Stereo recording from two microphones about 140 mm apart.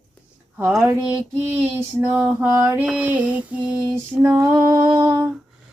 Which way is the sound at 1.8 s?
20° right (ahead or behind).